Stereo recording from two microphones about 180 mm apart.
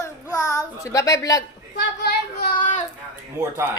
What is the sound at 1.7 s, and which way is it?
Speech, 70° left (ahead or behind).